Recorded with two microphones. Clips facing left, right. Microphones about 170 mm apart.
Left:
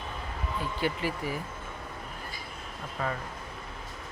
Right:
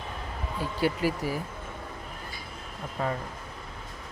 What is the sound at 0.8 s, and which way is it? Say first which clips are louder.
Speech: right 5 dB; 40° right (ahead or behind).